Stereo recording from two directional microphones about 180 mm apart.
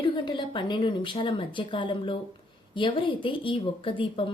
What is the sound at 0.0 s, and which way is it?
Speech, 25° left (ahead or behind).